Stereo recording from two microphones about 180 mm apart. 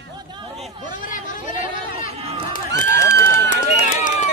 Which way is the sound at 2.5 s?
45° left (ahead or behind).